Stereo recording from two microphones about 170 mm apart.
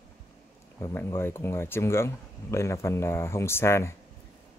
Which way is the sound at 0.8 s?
15° left (ahead or behind).